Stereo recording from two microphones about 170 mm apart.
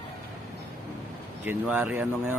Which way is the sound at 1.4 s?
10° right (ahead or behind).